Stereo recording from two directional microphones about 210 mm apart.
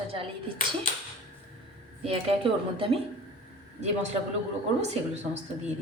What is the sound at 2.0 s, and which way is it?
Speech, 25° right (ahead or behind).